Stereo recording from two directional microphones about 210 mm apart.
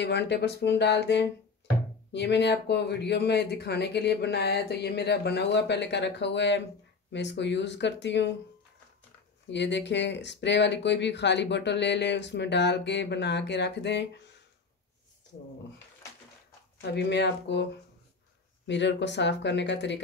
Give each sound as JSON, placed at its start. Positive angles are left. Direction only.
{"t": 0.0, "sound": "speech", "side_deg": 55}
{"t": 9.5, "sound": "speech", "side_deg": 55}
{"t": 16.9, "sound": "speech", "side_deg": 55}
{"t": 18.7, "sound": "speech", "side_deg": 55}